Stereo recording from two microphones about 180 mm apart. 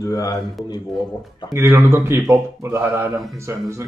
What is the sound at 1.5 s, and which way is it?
Speech, 15° right (ahead or behind).